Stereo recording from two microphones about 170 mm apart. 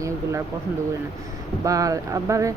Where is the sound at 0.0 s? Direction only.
15° right (ahead or behind).